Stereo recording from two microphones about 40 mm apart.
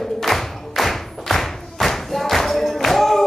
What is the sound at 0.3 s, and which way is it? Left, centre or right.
Clapping, centre.